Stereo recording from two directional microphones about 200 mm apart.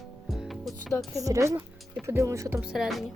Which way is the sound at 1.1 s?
15° right (ahead or behind).